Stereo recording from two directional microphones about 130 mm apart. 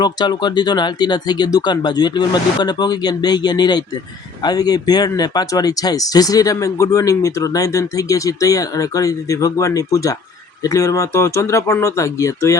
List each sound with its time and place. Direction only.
0.0 s speech: 35° left (ahead or behind)